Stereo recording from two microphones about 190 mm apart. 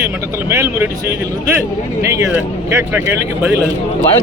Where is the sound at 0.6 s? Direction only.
15° right (ahead or behind).